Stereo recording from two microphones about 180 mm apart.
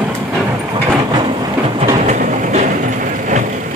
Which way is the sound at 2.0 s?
40° right (ahead or behind).